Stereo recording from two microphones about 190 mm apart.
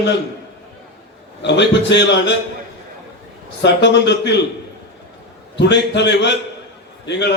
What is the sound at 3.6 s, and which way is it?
Speech, 65° left (ahead or behind).